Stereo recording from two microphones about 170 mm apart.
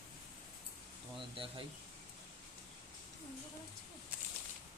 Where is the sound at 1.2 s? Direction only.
30° right (ahead or behind).